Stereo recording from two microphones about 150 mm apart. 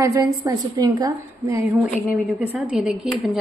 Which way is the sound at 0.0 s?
20° right (ahead or behind).